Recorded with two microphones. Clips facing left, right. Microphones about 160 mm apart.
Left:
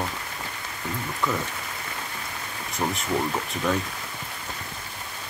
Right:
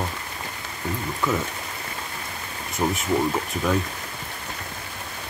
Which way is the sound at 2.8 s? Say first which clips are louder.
Right 3 dB; 15° right (ahead or behind).